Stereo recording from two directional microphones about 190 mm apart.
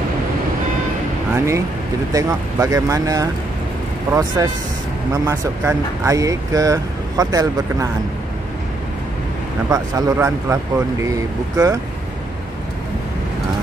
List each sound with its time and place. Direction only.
1.3 s speech: 15° right (ahead or behind)
9.7 s speech: 20° right (ahead or behind)